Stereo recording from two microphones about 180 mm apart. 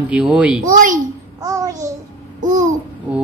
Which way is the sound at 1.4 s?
20° right (ahead or behind).